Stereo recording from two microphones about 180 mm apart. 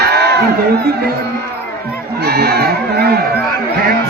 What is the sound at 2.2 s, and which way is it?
Baby cry, 65° right (ahead or behind).